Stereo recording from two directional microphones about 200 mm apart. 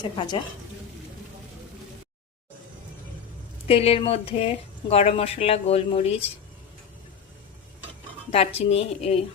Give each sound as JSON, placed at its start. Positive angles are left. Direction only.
{"t": 0.0, "sound": "speech", "side_deg": 20}
{"t": 3.7, "sound": "speech", "side_deg": 30}
{"t": 8.3, "sound": "speech", "side_deg": 30}